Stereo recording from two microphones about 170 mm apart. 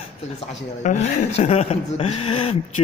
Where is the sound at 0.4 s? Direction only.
45° left (ahead or behind).